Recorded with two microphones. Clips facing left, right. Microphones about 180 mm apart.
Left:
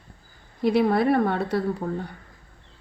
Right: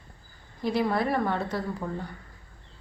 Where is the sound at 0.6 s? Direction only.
65° left (ahead or behind).